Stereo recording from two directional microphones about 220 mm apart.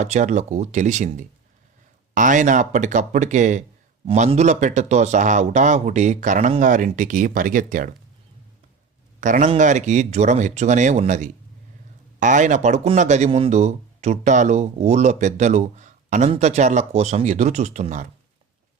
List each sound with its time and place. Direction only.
0.0 s speech: 35° right (ahead or behind)
9.2 s speech: 35° right (ahead or behind)